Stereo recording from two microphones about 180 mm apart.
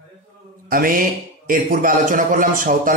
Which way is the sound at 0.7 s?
50° right (ahead or behind).